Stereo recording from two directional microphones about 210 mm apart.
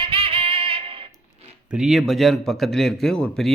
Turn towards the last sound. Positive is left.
turn(degrees=5)  # may be behind; listen again after turning